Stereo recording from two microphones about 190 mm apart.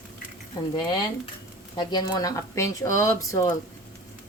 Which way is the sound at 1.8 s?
20° left (ahead or behind).